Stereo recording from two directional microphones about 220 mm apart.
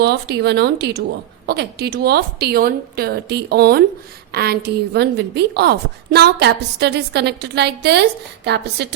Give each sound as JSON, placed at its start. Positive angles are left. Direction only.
{"t": 0.0, "sound": "a woman's voice", "side_deg": -50}